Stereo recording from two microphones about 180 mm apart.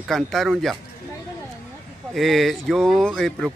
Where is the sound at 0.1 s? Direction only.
Centre (ahead or behind).